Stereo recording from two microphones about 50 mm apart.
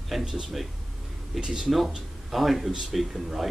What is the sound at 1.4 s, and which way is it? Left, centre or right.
Speech, centre.